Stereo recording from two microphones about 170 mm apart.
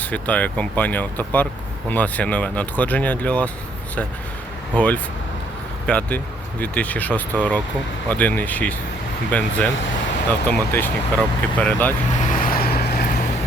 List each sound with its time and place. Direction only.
0.0 s speech: 10° left (ahead or behind)
4.7 s speech: 10° left (ahead or behind)
12.3 s vehicle: 55° left (ahead or behind)